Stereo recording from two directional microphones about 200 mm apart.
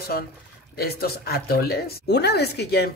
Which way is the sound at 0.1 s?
55° left (ahead or behind).